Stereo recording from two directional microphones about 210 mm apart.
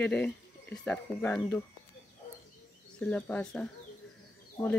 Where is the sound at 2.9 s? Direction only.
5° left (ahead or behind).